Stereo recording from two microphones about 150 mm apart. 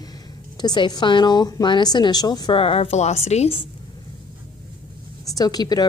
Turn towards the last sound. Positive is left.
turn(degrees=25)  # may be behind; listen again after turning